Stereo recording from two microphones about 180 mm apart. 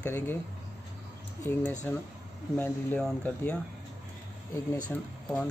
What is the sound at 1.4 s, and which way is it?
Speech, 10° left (ahead or behind).